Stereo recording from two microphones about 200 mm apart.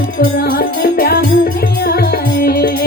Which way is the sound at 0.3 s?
45° left (ahead or behind).